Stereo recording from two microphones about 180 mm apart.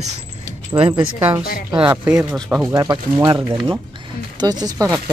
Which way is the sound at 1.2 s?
10° right (ahead or behind).